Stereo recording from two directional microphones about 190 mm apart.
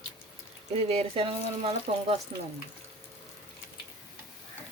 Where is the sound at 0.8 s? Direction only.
35° right (ahead or behind).